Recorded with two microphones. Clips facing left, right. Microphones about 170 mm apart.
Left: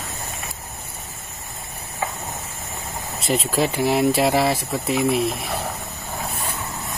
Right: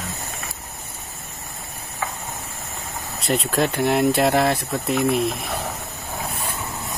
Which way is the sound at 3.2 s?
Centre (ahead or behind).